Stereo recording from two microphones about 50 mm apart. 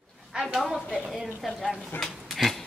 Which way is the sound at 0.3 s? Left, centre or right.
Centre.